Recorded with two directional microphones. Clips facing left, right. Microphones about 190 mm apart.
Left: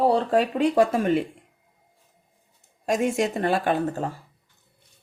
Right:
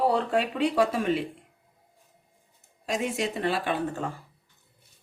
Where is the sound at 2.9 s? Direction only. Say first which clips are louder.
Left 6 dB; 50° left (ahead or behind).